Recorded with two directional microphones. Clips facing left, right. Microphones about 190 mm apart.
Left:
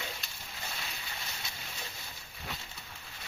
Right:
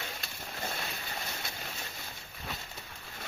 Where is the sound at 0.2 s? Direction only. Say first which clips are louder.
Right 6 dB; 50° right (ahead or behind).